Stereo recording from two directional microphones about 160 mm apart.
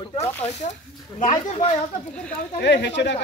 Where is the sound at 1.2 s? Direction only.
50° left (ahead or behind).